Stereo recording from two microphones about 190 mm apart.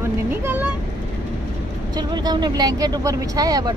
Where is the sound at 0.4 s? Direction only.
10° right (ahead or behind).